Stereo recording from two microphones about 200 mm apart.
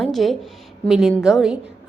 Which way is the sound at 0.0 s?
Centre (ahead or behind).